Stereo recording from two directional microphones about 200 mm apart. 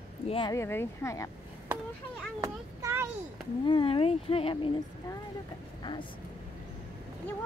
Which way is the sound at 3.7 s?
25° left (ahead or behind).